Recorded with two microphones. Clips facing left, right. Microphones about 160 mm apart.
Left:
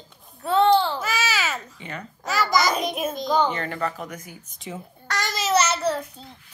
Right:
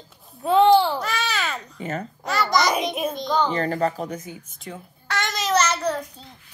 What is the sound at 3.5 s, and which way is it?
Speech, 35° right (ahead or behind).